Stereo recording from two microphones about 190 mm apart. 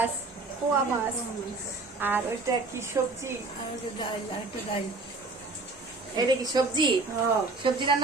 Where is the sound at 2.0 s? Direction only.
10° right (ahead or behind).